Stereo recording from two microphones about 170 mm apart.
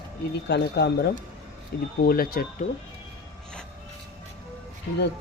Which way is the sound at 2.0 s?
60° left (ahead or behind).